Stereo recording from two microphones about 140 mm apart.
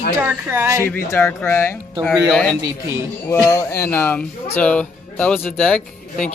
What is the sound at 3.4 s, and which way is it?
Speech, 20° left (ahead or behind).